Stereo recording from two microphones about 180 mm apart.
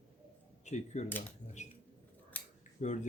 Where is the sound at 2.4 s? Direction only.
10° left (ahead or behind).